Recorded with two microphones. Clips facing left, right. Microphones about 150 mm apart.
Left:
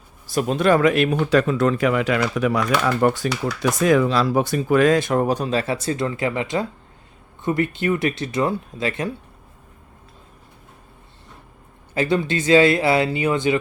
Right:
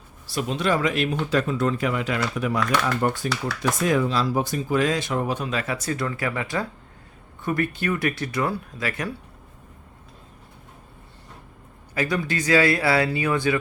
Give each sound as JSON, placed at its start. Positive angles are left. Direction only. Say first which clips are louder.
{"t": 0.3, "sound": "speech", "louder": "left 6 dB", "side_deg": 50}
{"t": 11.9, "sound": "speech", "louder": "left 5 dB", "side_deg": 25}